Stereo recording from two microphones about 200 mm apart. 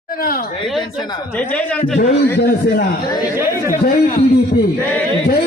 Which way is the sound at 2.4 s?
50° left (ahead or behind).